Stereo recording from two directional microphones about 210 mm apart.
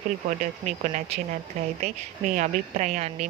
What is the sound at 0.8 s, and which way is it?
Speech, 35° right (ahead or behind).